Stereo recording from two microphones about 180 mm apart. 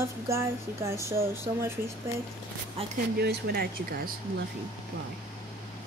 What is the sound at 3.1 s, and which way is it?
Speech, 60° right (ahead or behind).